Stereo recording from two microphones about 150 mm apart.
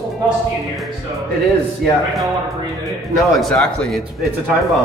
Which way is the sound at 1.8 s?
Centre (ahead or behind).